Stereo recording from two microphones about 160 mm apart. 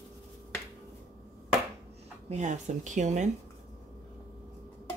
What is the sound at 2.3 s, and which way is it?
Speech, 45° right (ahead or behind).